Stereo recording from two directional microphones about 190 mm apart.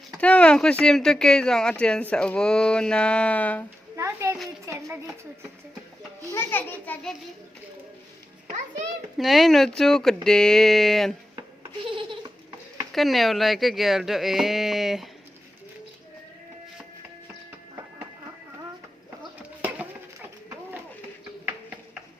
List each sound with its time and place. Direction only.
0.2 s speech: 5° left (ahead or behind)
3.9 s a child's voice: 15° right (ahead or behind)
6.3 s a child's voice: 10° left (ahead or behind)
9.1 s speech: centre (ahead or behind)
11.9 s goat: 25° right (ahead or behind)
12.9 s speech: centre (ahead or behind)